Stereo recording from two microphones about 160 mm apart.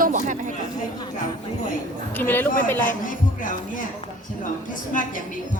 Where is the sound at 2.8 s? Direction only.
55° left (ahead or behind).